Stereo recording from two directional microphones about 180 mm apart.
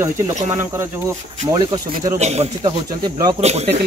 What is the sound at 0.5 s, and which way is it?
Speech, 15° right (ahead or behind).